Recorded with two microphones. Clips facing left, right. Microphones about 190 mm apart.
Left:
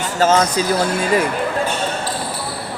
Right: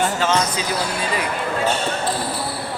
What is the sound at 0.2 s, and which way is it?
Speech, 40° left (ahead or behind).